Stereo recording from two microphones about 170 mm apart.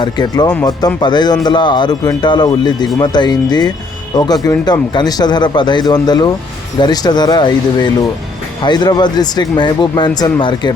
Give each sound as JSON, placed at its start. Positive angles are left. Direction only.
{"t": 0.0, "sound": "a man's voice", "side_deg": 25}